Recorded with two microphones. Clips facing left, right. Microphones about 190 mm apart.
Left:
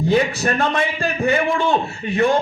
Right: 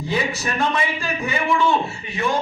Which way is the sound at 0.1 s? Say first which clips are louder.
Left 5 dB; 55° left (ahead or behind).